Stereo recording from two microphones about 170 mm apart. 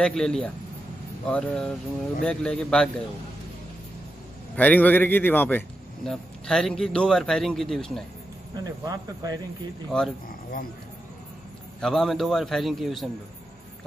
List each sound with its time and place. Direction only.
0.0 s a man's voice: 5° left (ahead or behind)
4.6 s a man's voice: 10° left (ahead or behind)
8.5 s speech: 20° right (ahead or behind)
9.8 s a man's voice: 5° left (ahead or behind)
11.8 s a man's voice: centre (ahead or behind)